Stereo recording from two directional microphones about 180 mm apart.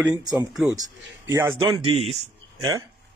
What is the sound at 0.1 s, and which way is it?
Speech, 20° right (ahead or behind).